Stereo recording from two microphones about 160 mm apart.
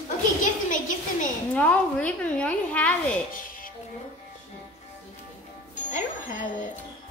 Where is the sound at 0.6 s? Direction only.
55° left (ahead or behind).